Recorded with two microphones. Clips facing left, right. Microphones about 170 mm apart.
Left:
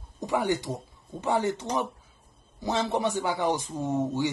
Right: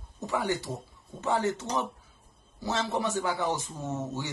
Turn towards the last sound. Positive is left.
turn(degrees=10)  # may be behind; listen again after turning